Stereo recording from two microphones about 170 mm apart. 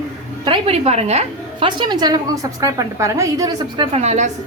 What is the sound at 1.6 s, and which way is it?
A woman's voice, 25° right (ahead or behind).